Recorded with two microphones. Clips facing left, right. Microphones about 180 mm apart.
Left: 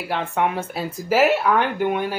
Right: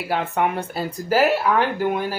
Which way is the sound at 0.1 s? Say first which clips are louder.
Right 1 dB; centre (ahead or behind).